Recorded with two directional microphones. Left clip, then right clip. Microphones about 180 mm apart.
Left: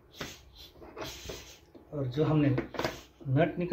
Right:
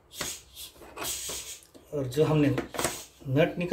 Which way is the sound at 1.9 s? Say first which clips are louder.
Right 4 dB; 35° right (ahead or behind).